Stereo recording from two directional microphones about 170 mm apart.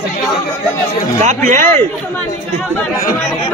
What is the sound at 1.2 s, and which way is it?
Speech, 45° right (ahead or behind).